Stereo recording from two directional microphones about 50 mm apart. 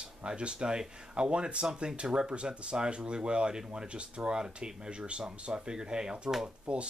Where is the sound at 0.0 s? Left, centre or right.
Centre.